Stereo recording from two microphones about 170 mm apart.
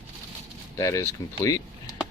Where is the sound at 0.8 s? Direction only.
15° left (ahead or behind).